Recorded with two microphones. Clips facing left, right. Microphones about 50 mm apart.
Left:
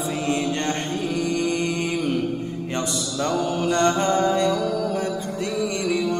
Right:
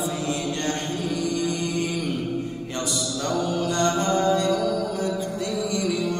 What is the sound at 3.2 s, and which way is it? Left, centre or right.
Mantra, left.